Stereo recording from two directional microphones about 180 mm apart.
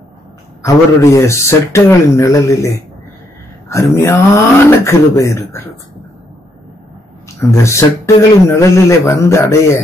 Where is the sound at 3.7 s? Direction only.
15° left (ahead or behind).